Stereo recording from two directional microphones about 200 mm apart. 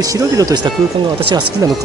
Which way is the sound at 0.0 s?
15° right (ahead or behind).